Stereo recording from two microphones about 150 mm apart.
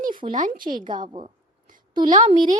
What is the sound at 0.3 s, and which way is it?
Speech, 65° right (ahead or behind).